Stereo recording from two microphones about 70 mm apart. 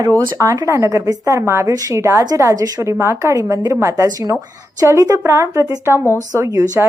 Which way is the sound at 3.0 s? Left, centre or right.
Right.